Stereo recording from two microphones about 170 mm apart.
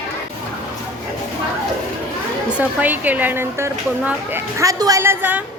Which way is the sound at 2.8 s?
10° right (ahead or behind).